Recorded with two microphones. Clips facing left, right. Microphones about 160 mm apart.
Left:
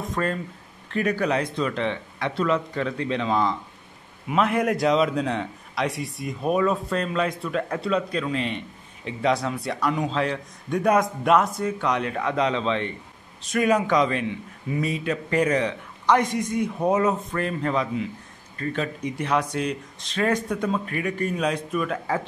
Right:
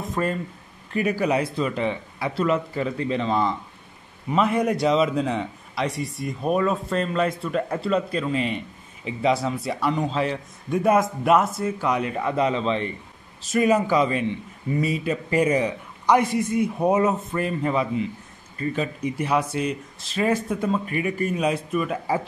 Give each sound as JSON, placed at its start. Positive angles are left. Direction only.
{"t": 0.1, "sound": "a man's voice", "side_deg": -5}